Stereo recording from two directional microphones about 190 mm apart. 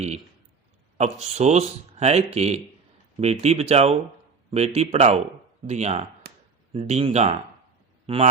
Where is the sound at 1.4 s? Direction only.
35° right (ahead or behind).